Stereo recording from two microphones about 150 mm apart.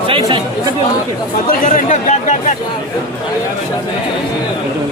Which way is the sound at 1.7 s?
55° left (ahead or behind).